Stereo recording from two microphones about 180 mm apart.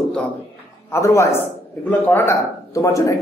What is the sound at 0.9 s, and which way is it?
A man's voice, 15° left (ahead or behind).